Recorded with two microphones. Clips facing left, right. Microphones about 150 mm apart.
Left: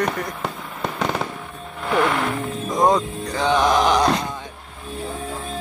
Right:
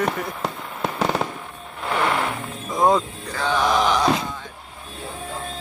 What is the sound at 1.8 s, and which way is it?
Vehicle, centre (ahead or behind).